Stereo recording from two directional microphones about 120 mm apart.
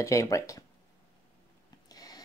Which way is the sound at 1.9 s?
30° left (ahead or behind).